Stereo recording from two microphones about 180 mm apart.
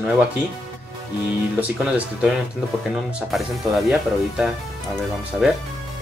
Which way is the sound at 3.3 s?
Centre (ahead or behind).